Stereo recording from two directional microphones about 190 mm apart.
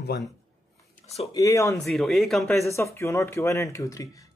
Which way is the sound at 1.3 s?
15° left (ahead or behind).